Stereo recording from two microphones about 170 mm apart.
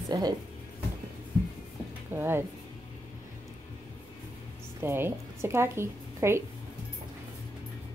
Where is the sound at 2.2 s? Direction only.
15° right (ahead or behind).